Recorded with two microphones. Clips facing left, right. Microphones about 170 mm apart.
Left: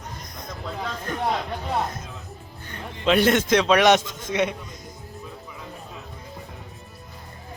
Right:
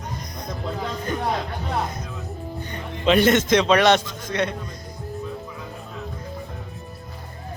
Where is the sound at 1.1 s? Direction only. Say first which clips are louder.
Right 3 dB; centre (ahead or behind).